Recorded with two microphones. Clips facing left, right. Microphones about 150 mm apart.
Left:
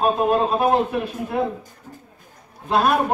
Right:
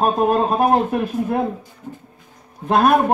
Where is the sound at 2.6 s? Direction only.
50° right (ahead or behind).